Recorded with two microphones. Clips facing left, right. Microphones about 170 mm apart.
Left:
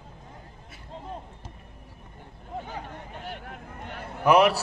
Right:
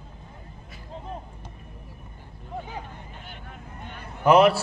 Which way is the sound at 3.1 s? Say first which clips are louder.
Left 5 dB; 75° left (ahead or behind).